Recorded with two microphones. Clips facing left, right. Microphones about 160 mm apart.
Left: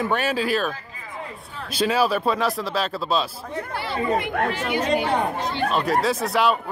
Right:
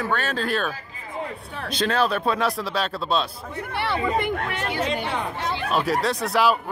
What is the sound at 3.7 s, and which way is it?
Chatter, 65° right (ahead or behind).